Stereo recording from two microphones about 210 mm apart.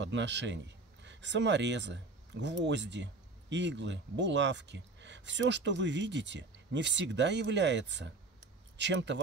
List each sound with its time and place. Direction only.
0.0 s speech: 55° right (ahead or behind)